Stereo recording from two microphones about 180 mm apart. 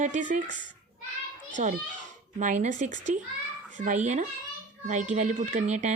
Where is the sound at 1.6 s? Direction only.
40° right (ahead or behind).